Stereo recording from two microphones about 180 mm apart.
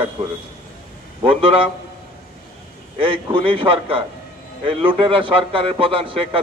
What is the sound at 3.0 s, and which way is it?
A man's voice, 30° right (ahead or behind).